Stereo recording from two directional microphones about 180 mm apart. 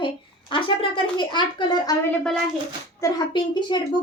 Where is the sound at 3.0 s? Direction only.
25° left (ahead or behind).